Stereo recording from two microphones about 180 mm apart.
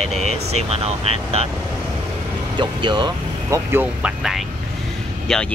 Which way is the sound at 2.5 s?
25° right (ahead or behind).